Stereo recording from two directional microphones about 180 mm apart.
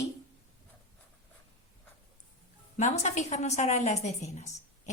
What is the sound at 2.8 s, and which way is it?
A woman's voice, 40° left (ahead or behind).